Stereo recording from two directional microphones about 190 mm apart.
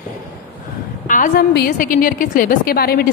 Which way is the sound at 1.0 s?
45° left (ahead or behind).